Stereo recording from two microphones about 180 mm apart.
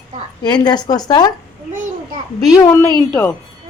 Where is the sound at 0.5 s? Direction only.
25° left (ahead or behind).